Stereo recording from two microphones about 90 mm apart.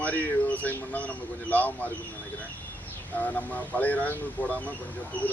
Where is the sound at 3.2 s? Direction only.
15° left (ahead or behind).